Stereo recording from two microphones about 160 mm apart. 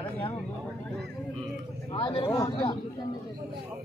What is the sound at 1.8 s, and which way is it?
Speech, 35° left (ahead or behind).